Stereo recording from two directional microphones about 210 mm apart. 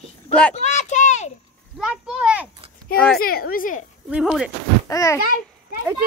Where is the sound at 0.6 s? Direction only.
35° left (ahead or behind).